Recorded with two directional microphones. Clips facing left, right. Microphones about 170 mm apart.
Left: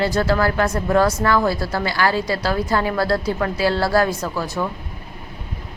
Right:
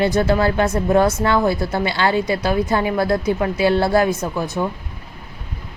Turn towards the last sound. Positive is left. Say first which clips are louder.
# right 2 dB
turn(degrees=-20)  # may be behind; listen again after turning